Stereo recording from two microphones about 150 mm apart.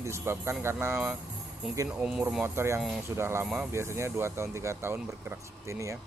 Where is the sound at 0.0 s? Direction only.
15° right (ahead or behind).